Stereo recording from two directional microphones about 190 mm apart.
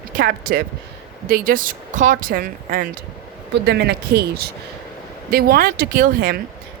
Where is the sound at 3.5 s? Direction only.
65° right (ahead or behind).